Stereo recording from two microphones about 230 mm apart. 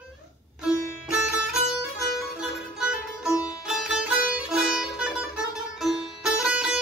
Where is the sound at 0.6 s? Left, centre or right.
Centre.